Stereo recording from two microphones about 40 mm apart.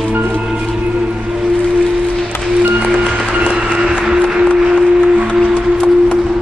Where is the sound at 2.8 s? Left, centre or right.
Centre.